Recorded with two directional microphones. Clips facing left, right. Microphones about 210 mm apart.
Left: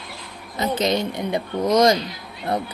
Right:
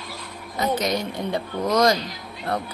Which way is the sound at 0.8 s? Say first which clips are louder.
Left 3 dB; 25° left (ahead or behind).